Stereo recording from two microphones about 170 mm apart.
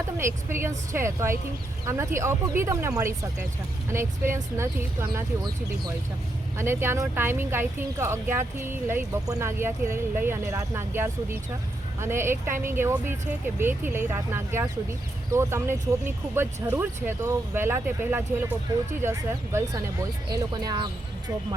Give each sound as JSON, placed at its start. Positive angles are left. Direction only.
{"t": 0.2, "sound": "speech", "side_deg": -15}
{"t": 6.6, "sound": "speech", "side_deg": -15}
{"t": 19.5, "sound": "speech", "side_deg": -20}